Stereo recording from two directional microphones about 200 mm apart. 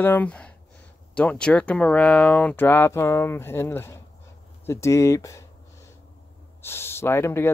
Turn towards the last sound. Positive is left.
turn(degrees=10)  # may be behind; listen again after turning